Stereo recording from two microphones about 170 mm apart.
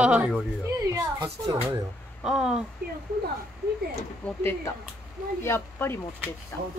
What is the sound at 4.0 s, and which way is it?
Speech, 15° left (ahead or behind).